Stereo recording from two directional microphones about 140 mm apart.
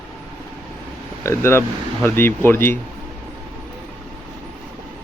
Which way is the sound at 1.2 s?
20° left (ahead or behind).